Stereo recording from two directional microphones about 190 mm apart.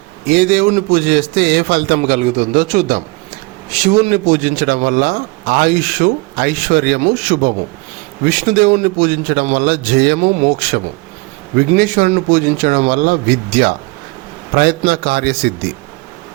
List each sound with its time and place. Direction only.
0.3 s a man's voice: 50° right (ahead or behind)
2.0 s a man's voice: 35° right (ahead or behind); by 10.2 s 55° right (ahead or behind)
11.8 s a man's voice: 45° right (ahead or behind)